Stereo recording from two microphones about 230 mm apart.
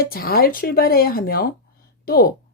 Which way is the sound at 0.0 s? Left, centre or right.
Left.